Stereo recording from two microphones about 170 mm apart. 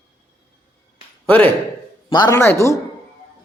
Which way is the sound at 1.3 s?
10° left (ahead or behind).